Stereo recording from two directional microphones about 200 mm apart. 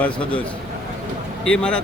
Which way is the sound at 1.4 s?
5° left (ahead or behind).